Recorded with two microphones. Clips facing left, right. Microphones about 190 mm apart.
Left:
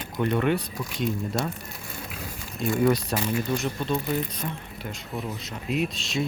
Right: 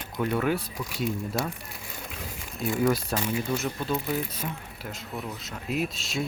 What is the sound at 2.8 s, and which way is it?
Speech, centre (ahead or behind).